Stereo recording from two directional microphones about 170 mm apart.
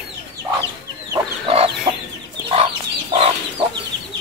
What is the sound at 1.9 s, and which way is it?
Chicken, 25° right (ahead or behind).